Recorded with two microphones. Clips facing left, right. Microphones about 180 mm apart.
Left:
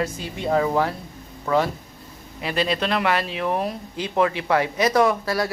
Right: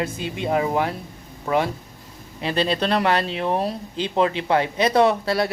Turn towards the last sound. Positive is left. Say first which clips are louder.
# right 2 dB
turn(degrees=-25)  # may be behind; listen again after turning